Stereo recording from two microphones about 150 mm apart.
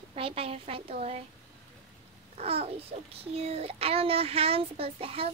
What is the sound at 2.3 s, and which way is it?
A child's voice, 40° right (ahead or behind).